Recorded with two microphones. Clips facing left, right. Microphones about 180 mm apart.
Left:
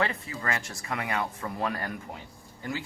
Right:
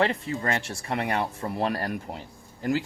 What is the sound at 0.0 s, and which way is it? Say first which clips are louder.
Speech: right 5 dB; 30° right (ahead or behind).